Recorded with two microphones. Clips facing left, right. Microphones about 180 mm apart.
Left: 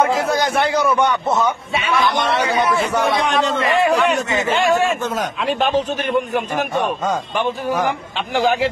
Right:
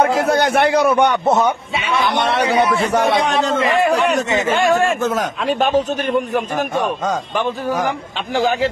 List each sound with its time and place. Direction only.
0.0 s a man's voice: 60° right (ahead or behind)
3.2 s a man's voice: 40° right (ahead or behind)